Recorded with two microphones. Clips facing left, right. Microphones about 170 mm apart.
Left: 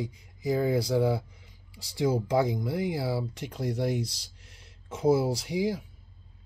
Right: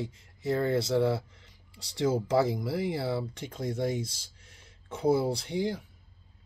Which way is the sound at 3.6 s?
70° left (ahead or behind).